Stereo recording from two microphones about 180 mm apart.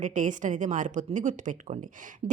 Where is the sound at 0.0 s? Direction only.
45° right (ahead or behind).